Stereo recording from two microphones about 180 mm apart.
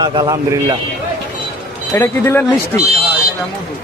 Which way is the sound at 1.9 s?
15° left (ahead or behind).